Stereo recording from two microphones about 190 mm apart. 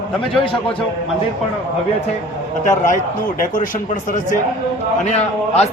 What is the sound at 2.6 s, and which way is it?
A man's voice, 45° left (ahead or behind).